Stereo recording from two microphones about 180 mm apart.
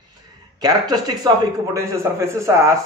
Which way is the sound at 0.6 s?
20° right (ahead or behind).